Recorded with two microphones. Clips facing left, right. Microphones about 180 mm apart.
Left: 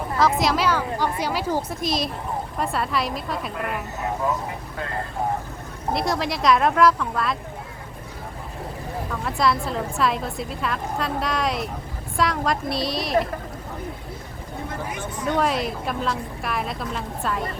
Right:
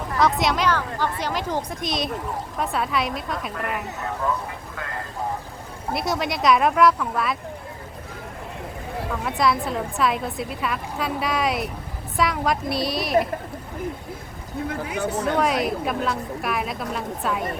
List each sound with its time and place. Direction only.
0.2 s a woman's voice: centre (ahead or behind)
5.9 s a woman's voice: centre (ahead or behind)
9.2 s a woman's voice: centre (ahead or behind)
15.4 s a woman's voice: centre (ahead or behind)